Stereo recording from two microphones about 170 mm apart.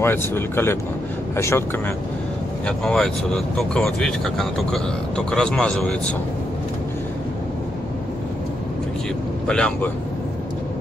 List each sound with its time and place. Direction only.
0.0 s speech: 15° left (ahead or behind)
2.6 s speech: 5° left (ahead or behind)
9.5 s speech: 5° left (ahead or behind)